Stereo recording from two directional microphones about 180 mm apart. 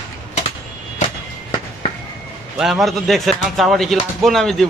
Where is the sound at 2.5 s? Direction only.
Centre (ahead or behind).